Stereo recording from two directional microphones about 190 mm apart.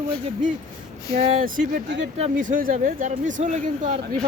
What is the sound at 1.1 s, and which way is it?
Speech, 45° right (ahead or behind).